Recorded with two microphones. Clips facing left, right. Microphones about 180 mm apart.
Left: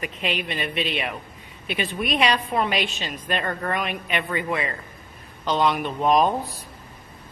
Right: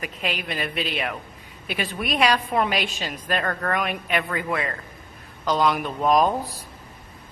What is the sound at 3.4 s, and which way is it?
Speech, 10° left (ahead or behind).